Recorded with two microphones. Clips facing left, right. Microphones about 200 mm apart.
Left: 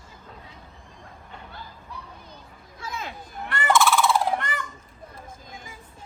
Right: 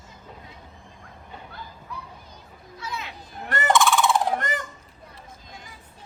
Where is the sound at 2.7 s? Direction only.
50° left (ahead or behind).